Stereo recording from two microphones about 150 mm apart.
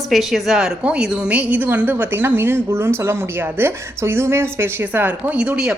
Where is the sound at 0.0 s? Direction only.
Centre (ahead or behind).